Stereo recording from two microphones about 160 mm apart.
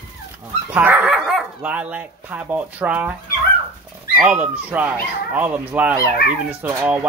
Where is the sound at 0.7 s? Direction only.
10° right (ahead or behind).